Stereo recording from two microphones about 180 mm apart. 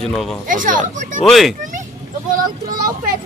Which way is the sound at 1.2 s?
Centre (ahead or behind).